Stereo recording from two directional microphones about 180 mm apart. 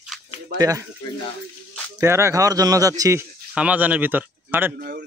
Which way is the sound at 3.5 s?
5° right (ahead or behind).